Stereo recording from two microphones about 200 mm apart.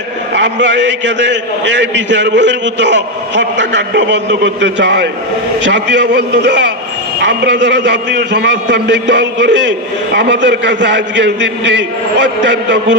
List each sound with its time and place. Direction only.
0.3 s a man's voice: 65° right (ahead or behind)